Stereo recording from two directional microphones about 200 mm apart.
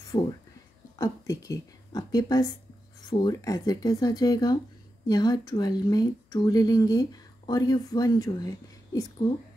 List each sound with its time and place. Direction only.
0.1 s a woman's voice: 25° left (ahead or behind)